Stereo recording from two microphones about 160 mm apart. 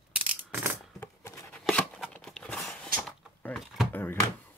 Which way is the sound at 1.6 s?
5° left (ahead or behind).